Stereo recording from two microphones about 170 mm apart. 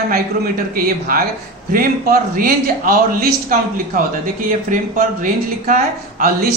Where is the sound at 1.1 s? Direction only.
55° right (ahead or behind).